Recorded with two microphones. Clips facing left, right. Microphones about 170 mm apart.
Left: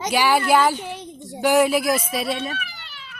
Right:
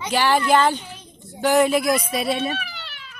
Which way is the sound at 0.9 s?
80° left.